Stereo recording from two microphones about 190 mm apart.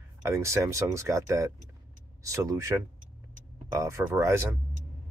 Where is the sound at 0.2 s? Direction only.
15° right (ahead or behind).